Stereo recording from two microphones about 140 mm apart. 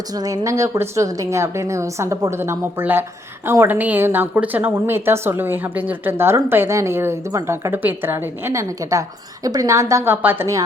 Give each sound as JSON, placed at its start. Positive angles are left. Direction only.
{"t": 0.1, "sound": "a woman's voice", "side_deg": -25}